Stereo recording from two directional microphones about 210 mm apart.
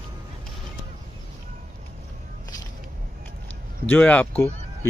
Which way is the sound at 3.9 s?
10° left (ahead or behind).